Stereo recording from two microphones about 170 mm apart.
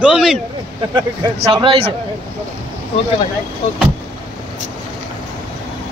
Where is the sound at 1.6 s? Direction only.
30° right (ahead or behind).